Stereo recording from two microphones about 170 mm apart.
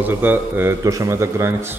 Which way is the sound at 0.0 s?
10° right (ahead or behind).